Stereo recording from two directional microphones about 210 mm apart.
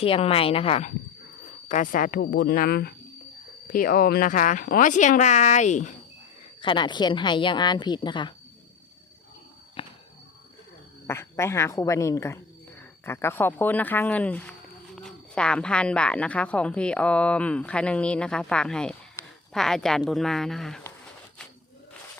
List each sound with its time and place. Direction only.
0.0 s a woman's voice: 25° left (ahead or behind)
1.6 s speech: 40° left (ahead or behind)
6.6 s a woman's voice: 20° left (ahead or behind)
9.8 s a sound: 25° left (ahead or behind)
11.0 s speech: 10° left (ahead or behind)